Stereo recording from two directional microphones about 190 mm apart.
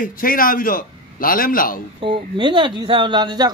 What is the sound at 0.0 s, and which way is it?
A man's voice, 50° left (ahead or behind).